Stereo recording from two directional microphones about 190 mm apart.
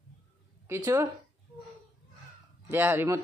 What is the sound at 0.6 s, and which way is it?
Speech, 15° right (ahead or behind).